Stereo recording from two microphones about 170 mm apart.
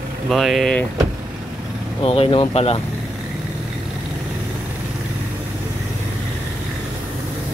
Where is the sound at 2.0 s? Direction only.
35° left (ahead or behind).